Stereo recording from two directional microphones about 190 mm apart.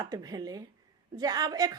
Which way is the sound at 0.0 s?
20° right (ahead or behind).